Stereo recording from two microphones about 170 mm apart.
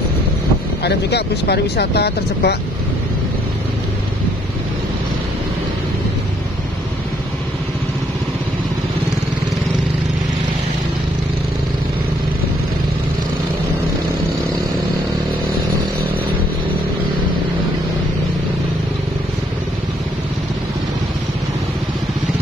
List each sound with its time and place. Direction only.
0.8 s speech: 75° left (ahead or behind)